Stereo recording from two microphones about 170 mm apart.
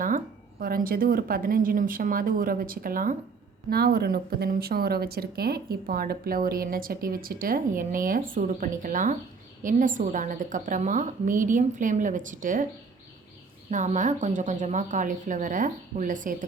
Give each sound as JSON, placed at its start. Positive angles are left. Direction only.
{"t": 0.6, "sound": "a woman's voice", "side_deg": -60}
{"t": 3.7, "sound": "a woman's voice", "side_deg": -65}
{"t": 13.7, "sound": "a woman's voice", "side_deg": -45}